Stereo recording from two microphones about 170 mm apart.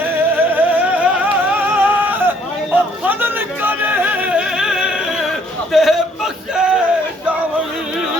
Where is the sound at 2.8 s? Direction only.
10° right (ahead or behind).